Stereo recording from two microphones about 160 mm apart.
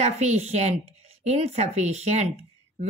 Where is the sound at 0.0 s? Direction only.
45° right (ahead or behind).